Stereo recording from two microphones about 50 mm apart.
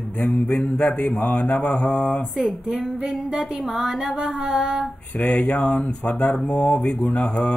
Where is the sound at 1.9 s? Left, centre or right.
Left.